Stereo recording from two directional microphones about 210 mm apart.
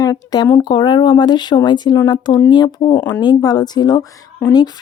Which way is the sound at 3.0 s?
10° left (ahead or behind).